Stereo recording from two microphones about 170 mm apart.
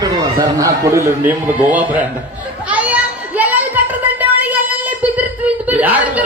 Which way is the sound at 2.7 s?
10° right (ahead or behind).